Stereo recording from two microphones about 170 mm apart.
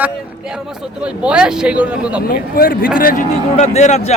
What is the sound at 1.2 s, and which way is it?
Speech, 5° right (ahead or behind).